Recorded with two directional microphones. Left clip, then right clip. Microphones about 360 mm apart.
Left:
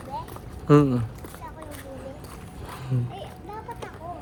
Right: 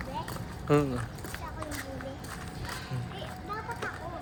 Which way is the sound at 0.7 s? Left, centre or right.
Left.